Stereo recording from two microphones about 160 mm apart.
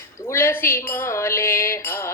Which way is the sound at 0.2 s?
15° left (ahead or behind).